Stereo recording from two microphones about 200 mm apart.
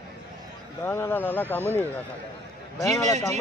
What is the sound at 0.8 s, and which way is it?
Speech, 10° left (ahead or behind).